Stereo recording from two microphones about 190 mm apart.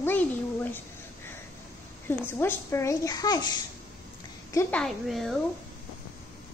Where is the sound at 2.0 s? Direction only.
10° left (ahead or behind).